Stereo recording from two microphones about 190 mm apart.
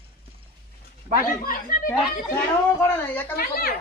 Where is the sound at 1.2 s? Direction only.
45° left (ahead or behind).